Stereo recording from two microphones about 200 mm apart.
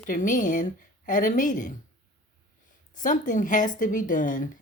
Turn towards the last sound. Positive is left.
turn(degrees=40)  # may be behind; listen again after turning